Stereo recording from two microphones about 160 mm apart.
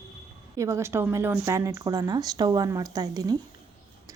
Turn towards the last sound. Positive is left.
turn(degrees=-25)  # may be behind; listen again after turning